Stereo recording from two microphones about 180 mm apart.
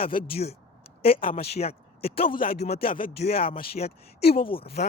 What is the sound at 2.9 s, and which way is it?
Speech, 50° left (ahead or behind).